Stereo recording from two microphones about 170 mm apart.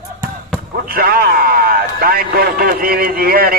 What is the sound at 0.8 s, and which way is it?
A man's voice, 60° right (ahead or behind).